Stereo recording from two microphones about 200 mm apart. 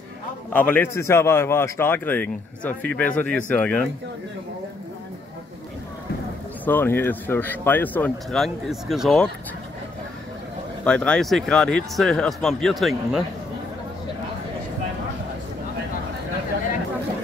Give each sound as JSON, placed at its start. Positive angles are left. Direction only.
{"t": 0.5, "sound": "speech", "side_deg": 10}
{"t": 6.6, "sound": "speech", "side_deg": 10}
{"t": 10.8, "sound": "speech", "side_deg": 5}